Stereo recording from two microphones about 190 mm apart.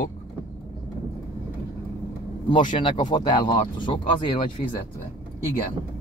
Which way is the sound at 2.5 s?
25° left (ahead or behind).